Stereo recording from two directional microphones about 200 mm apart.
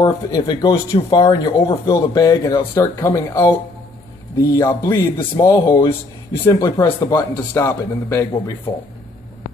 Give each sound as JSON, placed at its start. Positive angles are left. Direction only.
{"t": 0.0, "sound": "speech", "side_deg": 20}